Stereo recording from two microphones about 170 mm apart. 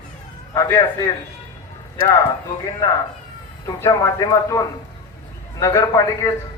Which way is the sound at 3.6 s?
20° left (ahead or behind).